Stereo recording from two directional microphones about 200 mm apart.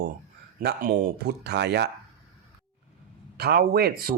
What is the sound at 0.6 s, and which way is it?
Speech, 45° right (ahead or behind).